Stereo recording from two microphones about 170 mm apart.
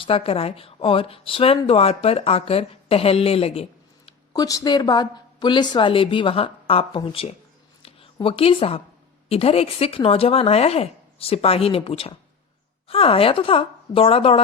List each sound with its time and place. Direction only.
0.0 s speech: 35° left (ahead or behind)
4.4 s a woman's voice: 20° left (ahead or behind)
7.8 s a sound: 35° left (ahead or behind)
9.3 s speech: 35° left (ahead or behind)